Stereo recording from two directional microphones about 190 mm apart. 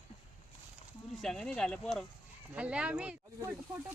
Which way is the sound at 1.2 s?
5° left (ahead or behind).